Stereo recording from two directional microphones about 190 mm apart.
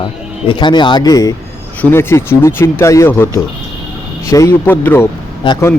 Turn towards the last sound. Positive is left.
turn(degrees=25)  # may be behind; listen again after turning